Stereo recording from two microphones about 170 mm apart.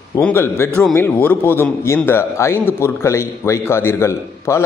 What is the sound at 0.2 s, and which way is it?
A man's voice, 15° left (ahead or behind).